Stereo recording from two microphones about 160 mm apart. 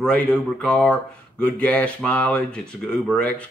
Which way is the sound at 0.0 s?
10° left (ahead or behind).